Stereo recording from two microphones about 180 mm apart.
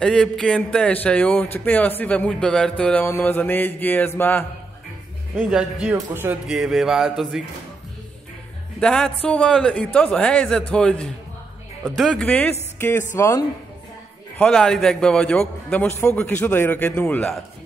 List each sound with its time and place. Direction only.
0.0 s a man's voice: 5° left (ahead or behind)
5.3 s speech: 5° right (ahead or behind)
8.7 s a man's voice: 5° left (ahead or behind)
14.4 s a man's voice: 5° left (ahead or behind)